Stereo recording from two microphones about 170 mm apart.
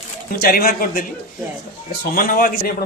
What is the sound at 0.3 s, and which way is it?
A man's voice, 60° left (ahead or behind).